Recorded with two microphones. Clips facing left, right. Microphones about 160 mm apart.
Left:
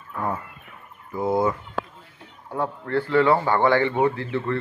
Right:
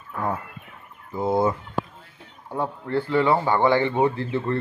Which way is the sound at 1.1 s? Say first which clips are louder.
Even; 25° right (ahead or behind).